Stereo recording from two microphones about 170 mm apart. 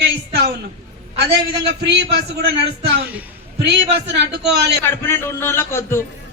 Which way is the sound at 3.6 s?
90° right.